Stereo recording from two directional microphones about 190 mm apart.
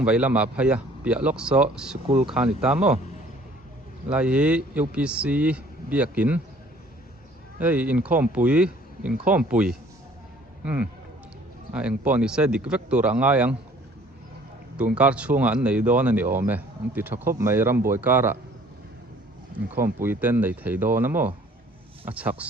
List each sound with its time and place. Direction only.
0.0 s speech: 5° right (ahead or behind)
4.1 s speech: 5° right (ahead or behind)
7.6 s speech: 5° right (ahead or behind)
14.8 s speech: 5° right (ahead or behind)
19.5 s speech: 10° right (ahead or behind)